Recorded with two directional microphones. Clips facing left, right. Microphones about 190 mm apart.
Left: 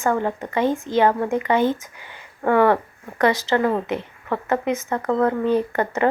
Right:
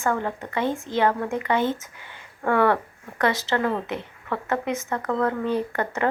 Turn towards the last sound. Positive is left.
turn(degrees=20)  # may be behind; listen again after turning